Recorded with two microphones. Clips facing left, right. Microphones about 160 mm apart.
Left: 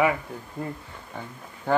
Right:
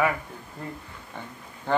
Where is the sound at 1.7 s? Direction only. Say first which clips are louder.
Left 2 dB; 10° left (ahead or behind).